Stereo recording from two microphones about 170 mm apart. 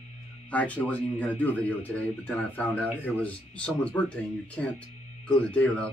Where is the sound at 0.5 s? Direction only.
10° left (ahead or behind).